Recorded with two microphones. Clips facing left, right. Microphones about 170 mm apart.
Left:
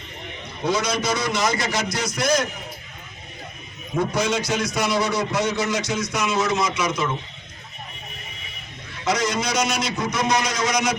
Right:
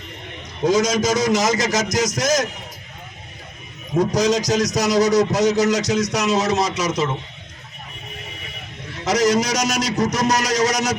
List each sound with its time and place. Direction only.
0.6 s a man's voice: 45° right (ahead or behind)
3.9 s a man's voice: 40° right (ahead or behind)
9.0 s a man's voice: 40° right (ahead or behind)